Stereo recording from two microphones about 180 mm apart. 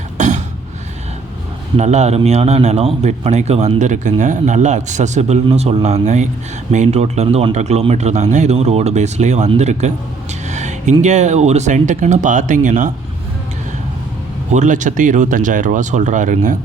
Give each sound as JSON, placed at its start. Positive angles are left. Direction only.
{"t": 0.2, "sound": "a sound", "side_deg": -40}
{"t": 1.7, "sound": "a man's voice", "side_deg": -40}
{"t": 14.5, "sound": "speech", "side_deg": -45}